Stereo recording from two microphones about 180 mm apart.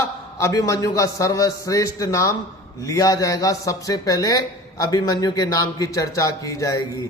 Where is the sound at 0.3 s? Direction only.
15° left (ahead or behind).